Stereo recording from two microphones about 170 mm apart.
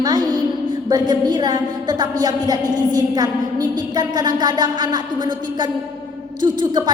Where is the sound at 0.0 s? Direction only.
25° right (ahead or behind).